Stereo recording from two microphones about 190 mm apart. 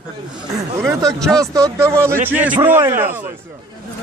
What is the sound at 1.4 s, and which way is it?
A man's voice, 15° right (ahead or behind).